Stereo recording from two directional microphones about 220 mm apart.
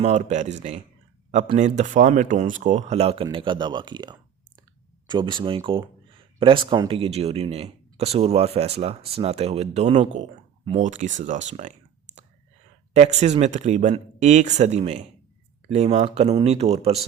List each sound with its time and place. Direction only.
0.0 s speech: 30° right (ahead or behind)
12.9 s speech: 30° right (ahead or behind)